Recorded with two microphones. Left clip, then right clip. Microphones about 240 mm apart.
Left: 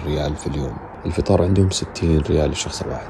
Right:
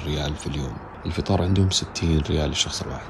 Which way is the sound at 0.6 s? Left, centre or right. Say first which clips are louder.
Left 5 dB; centre.